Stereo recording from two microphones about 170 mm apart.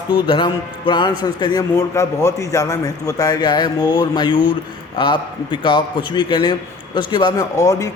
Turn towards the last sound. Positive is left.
turn(degrees=20)  # may be behind; listen again after turning